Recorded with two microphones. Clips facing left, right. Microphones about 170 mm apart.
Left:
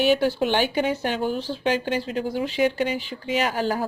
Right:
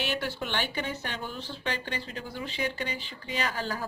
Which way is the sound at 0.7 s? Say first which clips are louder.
Left 11 dB; 85° left.